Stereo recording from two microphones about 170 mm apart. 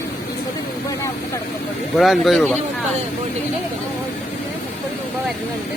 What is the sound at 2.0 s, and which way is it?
Speech, centre (ahead or behind).